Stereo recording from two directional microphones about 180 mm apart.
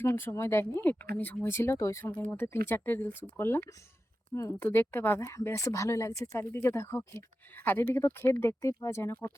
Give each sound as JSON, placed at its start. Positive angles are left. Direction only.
{"t": 0.0, "sound": "speech", "side_deg": 15}